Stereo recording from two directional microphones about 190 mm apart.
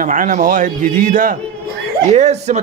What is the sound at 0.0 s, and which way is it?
A man's voice, 40° right (ahead or behind).